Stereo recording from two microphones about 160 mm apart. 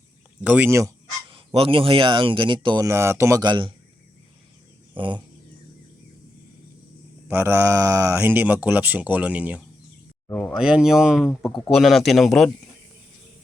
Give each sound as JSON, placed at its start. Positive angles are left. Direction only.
{"t": 0.4, "sound": "speech", "side_deg": -10}
{"t": 1.3, "sound": "speech", "side_deg": -35}
{"t": 4.9, "sound": "speech", "side_deg": -30}
{"t": 7.3, "sound": "speech", "side_deg": -15}
{"t": 10.2, "sound": "a sound", "side_deg": 10}
{"t": 10.5, "sound": "speech", "side_deg": -5}